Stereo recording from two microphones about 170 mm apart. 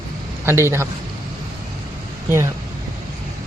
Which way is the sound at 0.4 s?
15° right (ahead or behind).